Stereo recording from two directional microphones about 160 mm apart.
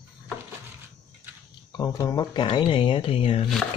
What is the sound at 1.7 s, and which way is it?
Speech, 25° left (ahead or behind).